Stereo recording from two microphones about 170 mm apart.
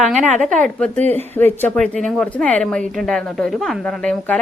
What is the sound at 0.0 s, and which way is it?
A woman's voice, 5° left (ahead or behind).